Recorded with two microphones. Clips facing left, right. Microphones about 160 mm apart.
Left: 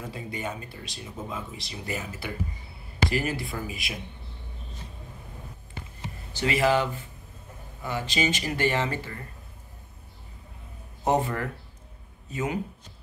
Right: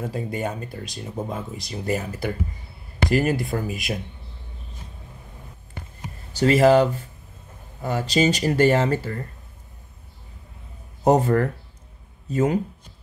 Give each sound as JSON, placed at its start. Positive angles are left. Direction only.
{"t": 0.1, "sound": "speech", "side_deg": -45}
{"t": 6.3, "sound": "speech", "side_deg": -40}
{"t": 11.1, "sound": "speech", "side_deg": -40}